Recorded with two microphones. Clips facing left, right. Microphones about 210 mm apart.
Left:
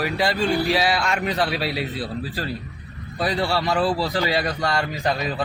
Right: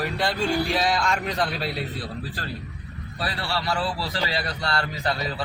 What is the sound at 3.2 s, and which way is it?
Speech, 15° left (ahead or behind).